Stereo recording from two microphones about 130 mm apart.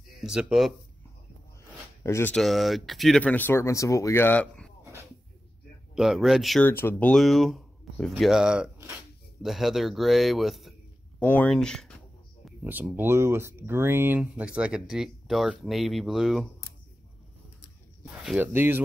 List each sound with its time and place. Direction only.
0.2 s speech: 5° right (ahead or behind)
2.0 s speech: 20° left (ahead or behind)
2.3 s speech: centre (ahead or behind)
5.9 s speech: 5° right (ahead or behind)
6.6 s speech: 15° left (ahead or behind); by 8.7 s 5° right (ahead or behind)
8.7 s speech: 20° right (ahead or behind)
9.4 s speech: centre (ahead or behind)
11.1 s speech: 10° left (ahead or behind)
12.6 s speech: 15° right (ahead or behind)
18.2 s speech: 5° right (ahead or behind)
18.5 s speech: 15° right (ahead or behind)